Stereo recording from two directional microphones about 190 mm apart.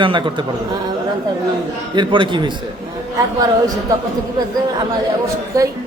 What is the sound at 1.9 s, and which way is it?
A man's voice, 25° right (ahead or behind).